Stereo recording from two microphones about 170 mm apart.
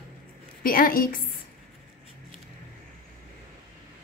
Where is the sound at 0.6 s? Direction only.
55° left (ahead or behind).